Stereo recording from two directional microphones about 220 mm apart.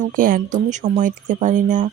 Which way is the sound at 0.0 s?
40° right (ahead or behind).